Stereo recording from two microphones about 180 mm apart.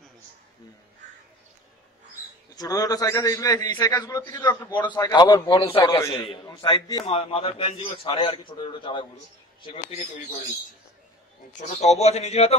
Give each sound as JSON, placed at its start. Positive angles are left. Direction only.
{"t": 2.5, "sound": "a man's voice", "side_deg": 20}
{"t": 11.5, "sound": "a man's voice", "side_deg": 40}